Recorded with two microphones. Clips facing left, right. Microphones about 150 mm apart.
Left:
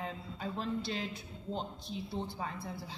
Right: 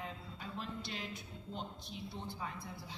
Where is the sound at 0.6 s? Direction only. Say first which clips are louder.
Left 8 dB; 30° left (ahead or behind).